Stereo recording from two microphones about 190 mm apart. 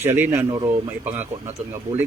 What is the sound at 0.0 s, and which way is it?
Speech, 10° right (ahead or behind).